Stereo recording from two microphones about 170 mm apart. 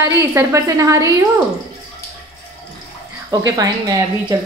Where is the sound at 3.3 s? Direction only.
20° right (ahead or behind).